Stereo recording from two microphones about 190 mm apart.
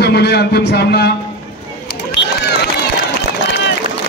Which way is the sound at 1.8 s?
60° left (ahead or behind).